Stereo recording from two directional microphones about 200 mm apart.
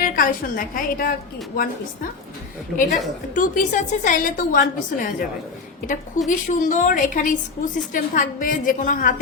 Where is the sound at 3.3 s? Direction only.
40° left (ahead or behind).